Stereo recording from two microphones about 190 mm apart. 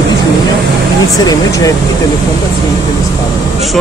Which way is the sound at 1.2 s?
20° left (ahead or behind).